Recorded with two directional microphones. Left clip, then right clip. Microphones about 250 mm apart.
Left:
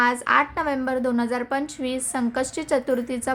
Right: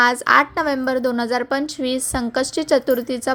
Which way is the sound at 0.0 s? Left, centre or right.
Right.